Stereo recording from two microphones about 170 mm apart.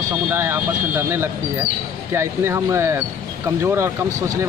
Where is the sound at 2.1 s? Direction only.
15° right (ahead or behind).